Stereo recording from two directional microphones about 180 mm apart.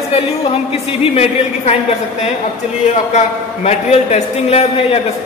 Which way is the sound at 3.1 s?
40° left (ahead or behind).